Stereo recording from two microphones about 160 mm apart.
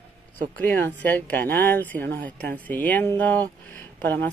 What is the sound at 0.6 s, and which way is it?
Speech, 10° left (ahead or behind).